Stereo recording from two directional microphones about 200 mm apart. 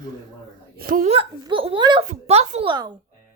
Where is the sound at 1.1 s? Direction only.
25° right (ahead or behind).